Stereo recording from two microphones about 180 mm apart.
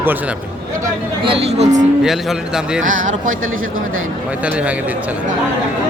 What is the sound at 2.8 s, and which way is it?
Speech, 45° right (ahead or behind).